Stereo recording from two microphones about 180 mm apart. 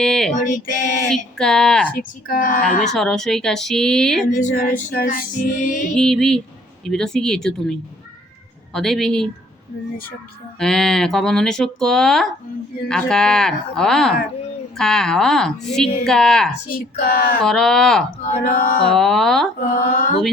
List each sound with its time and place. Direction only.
0.0 s female singing: 5° left (ahead or behind)
0.3 s music: 45° left (ahead or behind)
1.1 s speech: 5° left (ahead or behind)
2.0 s music: 50° left (ahead or behind)
2.8 s speech: 5° left (ahead or behind)
4.4 s music: 50° left (ahead or behind)
5.9 s speech: 5° left (ahead or behind)
10.6 s speech: 5° left (ahead or behind)
16.7 s speech: 55° left (ahead or behind)
17.4 s speech: 5° left (ahead or behind)
18.2 s music: 45° left (ahead or behind)
18.9 s speech: centre (ahead or behind)
19.5 s music: 50° left (ahead or behind)